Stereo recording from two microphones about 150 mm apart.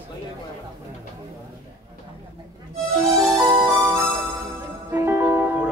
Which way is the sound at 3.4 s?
20° right (ahead or behind).